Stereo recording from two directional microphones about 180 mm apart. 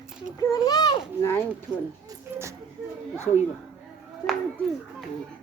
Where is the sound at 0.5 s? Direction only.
20° left (ahead or behind).